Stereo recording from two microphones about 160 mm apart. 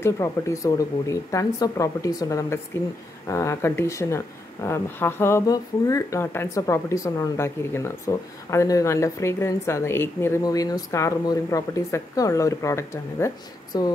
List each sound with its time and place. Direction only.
0.0 s speech: 20° left (ahead or behind)